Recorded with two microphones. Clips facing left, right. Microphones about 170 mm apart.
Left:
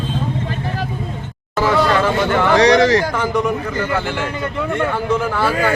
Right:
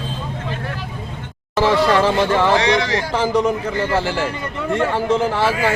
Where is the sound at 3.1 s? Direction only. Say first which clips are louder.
Right 1 dB; 25° right (ahead or behind).